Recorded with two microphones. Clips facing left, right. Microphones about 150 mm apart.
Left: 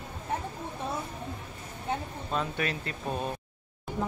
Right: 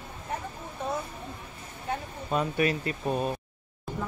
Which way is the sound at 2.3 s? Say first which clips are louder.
Right 5 dB; 5° right (ahead or behind).